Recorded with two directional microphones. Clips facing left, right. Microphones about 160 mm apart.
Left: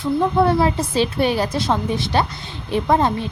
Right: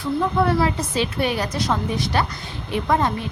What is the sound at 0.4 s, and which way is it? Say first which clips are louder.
A woman's voice: left 3 dB; 30° left (ahead or behind).